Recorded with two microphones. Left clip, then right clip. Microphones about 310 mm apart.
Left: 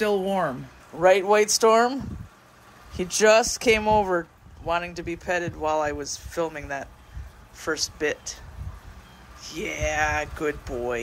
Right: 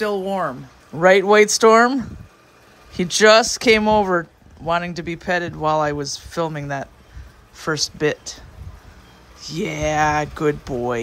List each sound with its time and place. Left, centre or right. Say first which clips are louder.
0.0 s speech: right 2 dB; centre
1.0 s speech: right 6 dB; right
9.4 s speech: right 5 dB; centre